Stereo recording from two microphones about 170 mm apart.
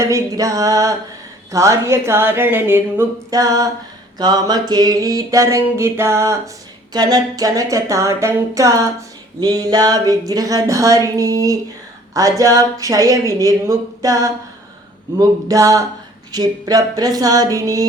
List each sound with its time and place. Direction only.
0.0 s music: 20° right (ahead or behind)
1.5 s speech: 20° right (ahead or behind)
4.2 s music: 25° right (ahead or behind)